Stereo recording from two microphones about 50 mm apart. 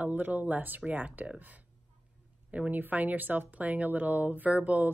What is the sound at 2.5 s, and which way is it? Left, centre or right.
Speech, right.